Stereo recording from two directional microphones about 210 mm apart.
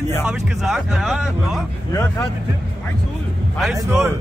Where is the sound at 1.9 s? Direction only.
10° left (ahead or behind).